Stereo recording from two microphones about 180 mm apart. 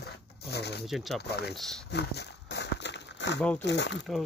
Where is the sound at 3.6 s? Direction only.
75° left (ahead or behind).